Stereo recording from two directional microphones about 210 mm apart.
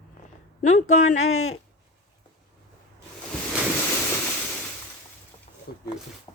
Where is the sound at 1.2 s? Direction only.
80° left.